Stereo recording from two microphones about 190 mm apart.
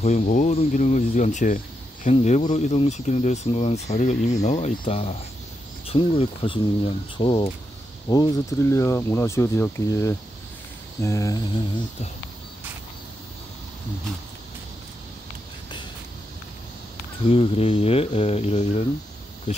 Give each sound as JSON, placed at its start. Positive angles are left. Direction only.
{"t": 0.0, "sound": "speech", "side_deg": 40}
{"t": 17.3, "sound": "speech", "side_deg": 30}